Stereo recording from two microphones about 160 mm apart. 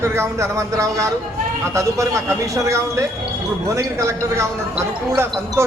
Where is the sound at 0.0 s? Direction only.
15° right (ahead or behind).